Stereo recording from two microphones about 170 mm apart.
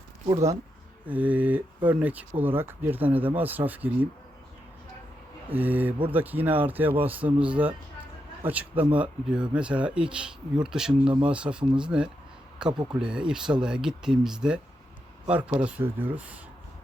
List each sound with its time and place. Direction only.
0.3 s speech: 20° right (ahead or behind)
5.5 s speech: 10° right (ahead or behind)
12.7 s speech: 25° right (ahead or behind)
13.0 s speech: 5° right (ahead or behind)